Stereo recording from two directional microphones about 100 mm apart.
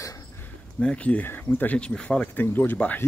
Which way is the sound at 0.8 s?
10° left (ahead or behind).